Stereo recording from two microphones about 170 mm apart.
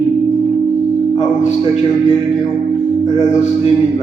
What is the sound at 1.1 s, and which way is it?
Speech, 40° left (ahead or behind).